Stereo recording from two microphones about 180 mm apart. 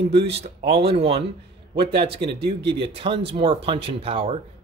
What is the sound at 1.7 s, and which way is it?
Speech, 65° right (ahead or behind).